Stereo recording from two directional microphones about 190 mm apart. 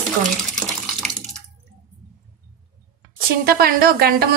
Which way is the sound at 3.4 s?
50° right (ahead or behind).